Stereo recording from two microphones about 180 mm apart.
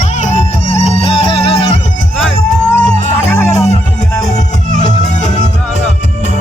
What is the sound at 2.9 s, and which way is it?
Music, 40° left (ahead or behind).